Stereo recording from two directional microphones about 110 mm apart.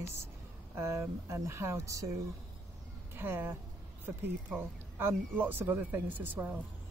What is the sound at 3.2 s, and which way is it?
Speech, 20° right (ahead or behind).